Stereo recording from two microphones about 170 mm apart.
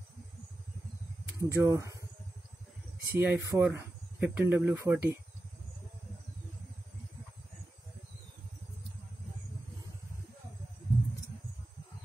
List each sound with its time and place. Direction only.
1.4 s speech: 20° right (ahead or behind)
3.1 s speech: 10° right (ahead or behind)